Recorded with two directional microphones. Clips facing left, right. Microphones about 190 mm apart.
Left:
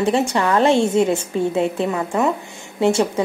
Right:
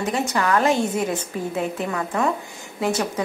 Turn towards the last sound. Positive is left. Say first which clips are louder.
# left 6 dB
turn(degrees=25)  # may be behind; listen again after turning